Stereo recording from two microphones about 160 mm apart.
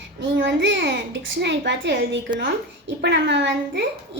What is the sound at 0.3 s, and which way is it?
A woman's voice, 90° right.